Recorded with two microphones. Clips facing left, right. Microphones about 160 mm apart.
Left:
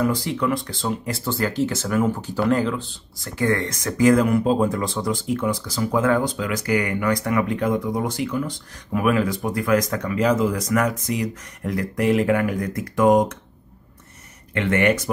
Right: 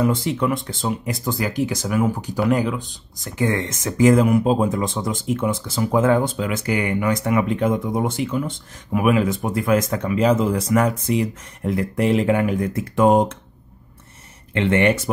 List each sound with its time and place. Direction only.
0.0 s speech: 20° right (ahead or behind)
14.5 s speech: 25° right (ahead or behind)